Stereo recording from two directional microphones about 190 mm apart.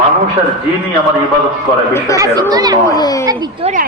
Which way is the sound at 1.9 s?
15° left (ahead or behind).